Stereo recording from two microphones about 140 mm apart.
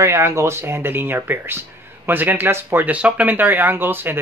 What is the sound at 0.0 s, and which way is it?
Speech, 20° right (ahead or behind).